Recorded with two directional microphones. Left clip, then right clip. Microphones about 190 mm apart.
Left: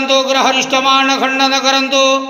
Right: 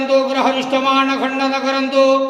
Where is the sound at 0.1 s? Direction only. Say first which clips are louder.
Left 3 dB; 10° left (ahead or behind).